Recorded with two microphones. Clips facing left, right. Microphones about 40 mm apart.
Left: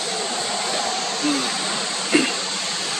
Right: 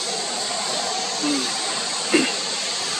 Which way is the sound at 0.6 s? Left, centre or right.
Centre.